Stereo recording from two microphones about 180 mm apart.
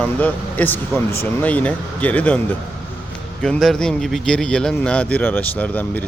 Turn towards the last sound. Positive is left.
turn(degrees=10)  # may be behind; listen again after turning